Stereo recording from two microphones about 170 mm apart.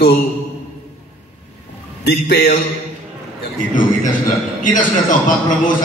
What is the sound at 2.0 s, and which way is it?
Speech, 70° left (ahead or behind).